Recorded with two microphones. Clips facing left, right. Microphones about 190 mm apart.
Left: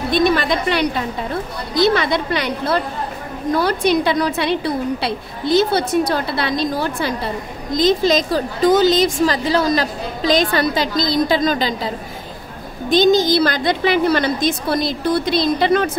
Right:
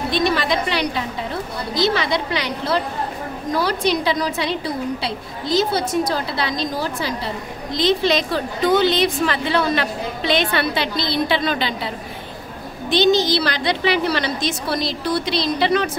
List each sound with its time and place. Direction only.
0.1 s a woman's voice: 50° left (ahead or behind)
7.7 s a woman's voice: 45° left (ahead or behind)
13.3 s a woman's voice: 50° left (ahead or behind)